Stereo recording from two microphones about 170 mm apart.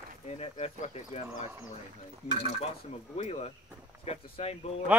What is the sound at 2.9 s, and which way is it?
Speech, 40° left (ahead or behind).